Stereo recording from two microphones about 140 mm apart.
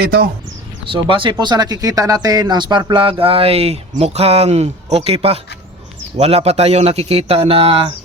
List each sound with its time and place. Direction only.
0.9 s speech: 35° right (ahead or behind)